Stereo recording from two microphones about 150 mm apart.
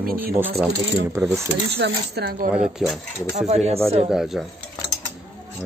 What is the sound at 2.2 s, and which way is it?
Speech, 90° right.